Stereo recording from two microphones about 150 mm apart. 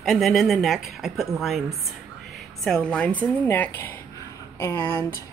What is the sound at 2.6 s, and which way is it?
Speech, 5° left (ahead or behind).